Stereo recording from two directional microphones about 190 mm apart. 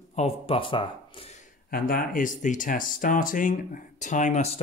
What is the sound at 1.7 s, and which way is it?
Speech, 50° left (ahead or behind).